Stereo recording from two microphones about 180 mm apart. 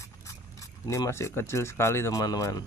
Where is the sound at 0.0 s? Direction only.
15° left (ahead or behind).